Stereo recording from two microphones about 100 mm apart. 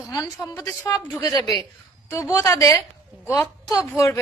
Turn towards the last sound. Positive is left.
turn(degrees=30)  # may be behind; listen again after turning